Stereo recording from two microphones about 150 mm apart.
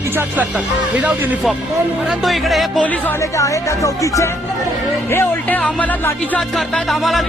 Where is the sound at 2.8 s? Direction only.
15° left (ahead or behind).